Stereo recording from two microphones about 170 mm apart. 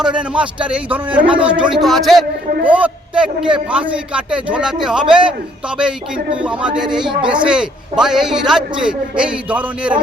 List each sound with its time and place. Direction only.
0.0 s a man's voice: 5° right (ahead or behind)
6.3 s a man's voice: 5° right (ahead or behind)
6.8 s speech: 25° right (ahead or behind)
7.3 s a man's voice: 5° right (ahead or behind)